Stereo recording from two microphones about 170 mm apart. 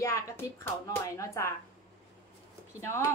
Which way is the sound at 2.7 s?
15° left (ahead or behind).